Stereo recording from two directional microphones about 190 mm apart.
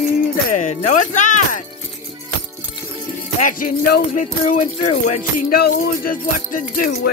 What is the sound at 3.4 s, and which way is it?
Speech, 45° left (ahead or behind).